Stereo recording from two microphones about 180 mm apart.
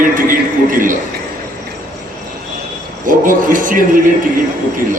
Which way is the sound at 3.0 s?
50° right (ahead or behind).